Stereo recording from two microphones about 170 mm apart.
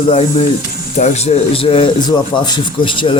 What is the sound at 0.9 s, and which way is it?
A man's voice, 40° left (ahead or behind).